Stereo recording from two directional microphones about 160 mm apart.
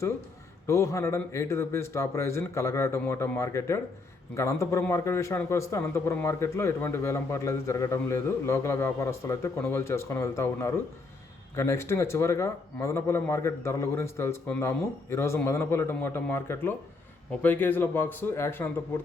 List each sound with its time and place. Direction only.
0.7 s a man's voice: 20° left (ahead or behind)